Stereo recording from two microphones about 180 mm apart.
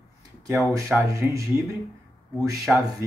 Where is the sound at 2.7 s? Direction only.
5° right (ahead or behind).